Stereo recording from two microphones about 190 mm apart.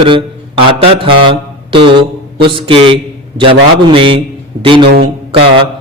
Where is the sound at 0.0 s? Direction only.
25° right (ahead or behind).